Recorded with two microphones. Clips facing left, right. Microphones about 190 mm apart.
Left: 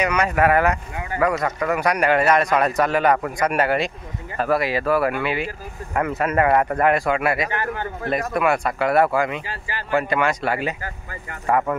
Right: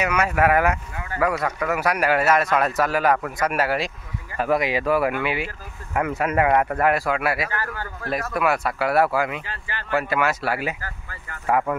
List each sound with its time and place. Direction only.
0.0 s a man's voice: 5° right (ahead or behind)
4.4 s a man's voice: 15° right (ahead or behind)
7.4 s a man's voice: 20° left (ahead or behind)
8.3 s a man's voice: centre (ahead or behind)
10.8 s a man's voice: 20° left (ahead or behind)
11.4 s a man's voice: 5° right (ahead or behind)